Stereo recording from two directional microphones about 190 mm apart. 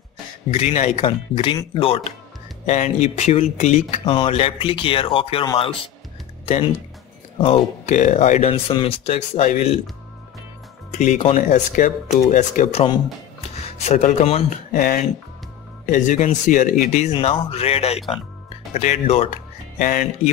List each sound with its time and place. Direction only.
0.5 s speech: 35° left (ahead or behind)
2.6 s speech: 40° left (ahead or behind)
10.9 s speech: 35° left (ahead or behind)
13.8 s speech: 35° left (ahead or behind)
14.7 s speech: 50° left (ahead or behind)
19.8 s speech: 45° left (ahead or behind)